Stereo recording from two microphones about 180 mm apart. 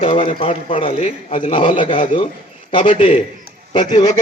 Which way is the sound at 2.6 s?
30° left (ahead or behind).